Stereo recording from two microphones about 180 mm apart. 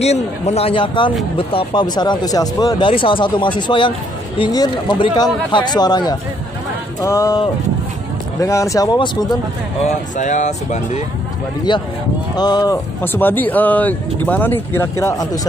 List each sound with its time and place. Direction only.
0.0 s speech: 35° left (ahead or behind)
10.1 s speech: 45° left (ahead or behind)
12.4 s speech: 20° left (ahead or behind)
13.0 s speech: 10° left (ahead or behind)